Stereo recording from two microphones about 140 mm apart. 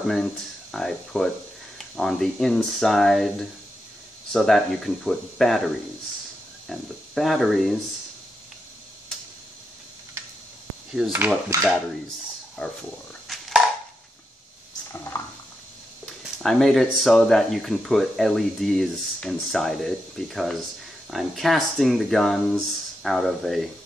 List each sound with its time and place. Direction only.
0.1 s speech: 5° left (ahead or behind)
6.7 s speech: centre (ahead or behind)
10.9 s speech: 5° right (ahead or behind)
12.6 s speech: 10° left (ahead or behind)
13.3 s a sound: centre (ahead or behind)
14.9 s a sound: 20° left (ahead or behind)
16.4 s speech: centre (ahead or behind)